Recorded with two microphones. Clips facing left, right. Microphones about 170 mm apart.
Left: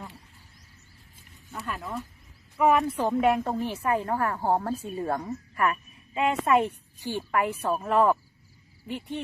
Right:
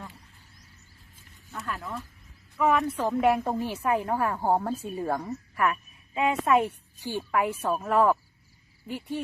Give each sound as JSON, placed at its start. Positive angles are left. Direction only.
{"t": 1.5, "sound": "a sound", "side_deg": 0}
{"t": 2.6, "sound": "speech", "side_deg": 15}
{"t": 3.1, "sound": "a woman's voice", "side_deg": 0}
{"t": 6.7, "sound": "a woman's voice", "side_deg": -15}
{"t": 7.5, "sound": "speech", "side_deg": 10}